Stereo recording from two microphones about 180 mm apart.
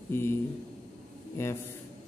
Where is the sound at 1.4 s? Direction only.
15° left (ahead or behind).